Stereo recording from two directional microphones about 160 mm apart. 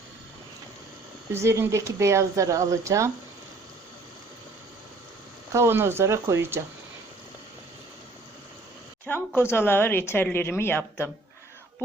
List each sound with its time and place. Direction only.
1.3 s speech: 15° right (ahead or behind)
5.5 s speech: 15° right (ahead or behind)
9.0 s speech: 15° left (ahead or behind)